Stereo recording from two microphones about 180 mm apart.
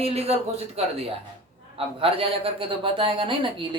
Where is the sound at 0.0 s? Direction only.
35° right (ahead or behind).